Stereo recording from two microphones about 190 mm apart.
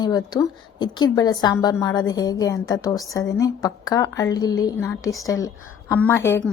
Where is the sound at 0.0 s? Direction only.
20° left (ahead or behind).